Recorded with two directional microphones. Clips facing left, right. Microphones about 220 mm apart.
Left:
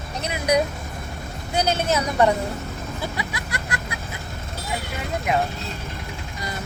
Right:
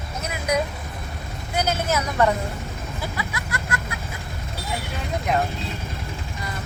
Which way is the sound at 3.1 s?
25° left (ahead or behind).